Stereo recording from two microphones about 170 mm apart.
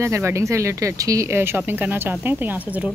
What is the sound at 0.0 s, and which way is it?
Speech, 15° right (ahead or behind).